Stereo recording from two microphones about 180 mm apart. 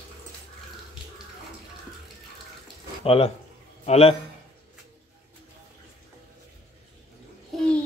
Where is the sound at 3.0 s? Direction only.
35° left (ahead or behind).